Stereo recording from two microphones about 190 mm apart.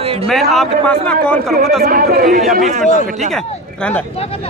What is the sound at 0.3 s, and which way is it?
A man's voice, centre (ahead or behind).